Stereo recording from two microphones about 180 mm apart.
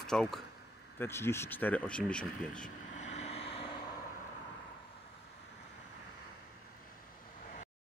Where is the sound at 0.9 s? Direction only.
15° left (ahead or behind).